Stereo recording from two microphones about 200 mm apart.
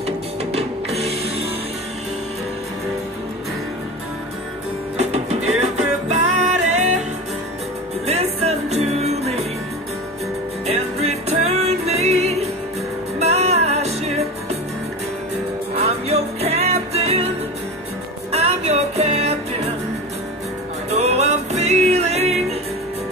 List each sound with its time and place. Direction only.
0.0 s music: 30° right (ahead or behind)
4.9 s music: 35° right (ahead or behind)
8.1 s music: 30° right (ahead or behind)
10.7 s music: 30° right (ahead or behind)
15.7 s music: 30° right (ahead or behind)
18.3 s music: 30° right (ahead or behind)
20.9 s music: 35° right (ahead or behind)